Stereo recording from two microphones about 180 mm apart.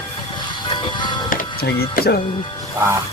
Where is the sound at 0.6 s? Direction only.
25° left (ahead or behind).